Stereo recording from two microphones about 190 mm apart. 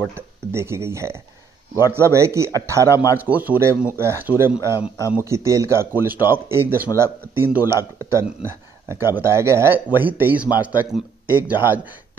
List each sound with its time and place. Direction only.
0.1 s speech: 15° right (ahead or behind)
4.7 s speech: 20° left (ahead or behind)
5.1 s speech: 15° right (ahead or behind)